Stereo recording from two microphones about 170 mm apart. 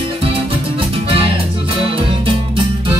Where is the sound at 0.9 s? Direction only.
35° right (ahead or behind).